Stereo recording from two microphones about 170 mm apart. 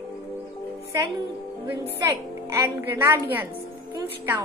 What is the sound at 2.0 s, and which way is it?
A woman's voice, 15° right (ahead or behind).